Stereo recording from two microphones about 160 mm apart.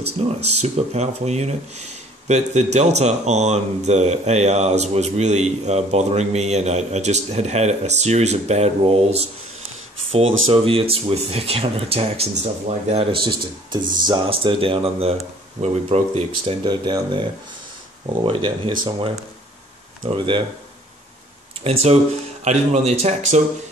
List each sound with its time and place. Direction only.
0.2 s speech: 40° right (ahead or behind)
16.6 s speech: 25° right (ahead or behind)
21.7 s speech: 35° right (ahead or behind)